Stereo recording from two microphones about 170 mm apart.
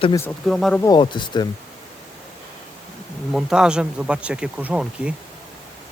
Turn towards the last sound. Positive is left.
turn(degrees=-5)  # may be behind; listen again after turning